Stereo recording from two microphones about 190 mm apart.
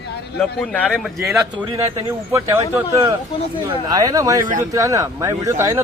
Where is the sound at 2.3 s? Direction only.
15° right (ahead or behind).